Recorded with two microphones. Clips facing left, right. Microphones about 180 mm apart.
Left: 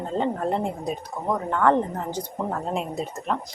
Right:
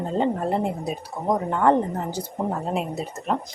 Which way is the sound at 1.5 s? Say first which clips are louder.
Right 1 dB; 20° right (ahead or behind).